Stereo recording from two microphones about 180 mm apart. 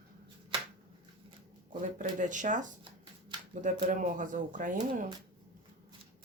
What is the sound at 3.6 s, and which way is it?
Speech, 45° right (ahead or behind).